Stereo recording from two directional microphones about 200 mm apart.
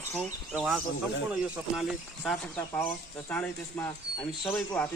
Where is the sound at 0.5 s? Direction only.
Centre (ahead or behind).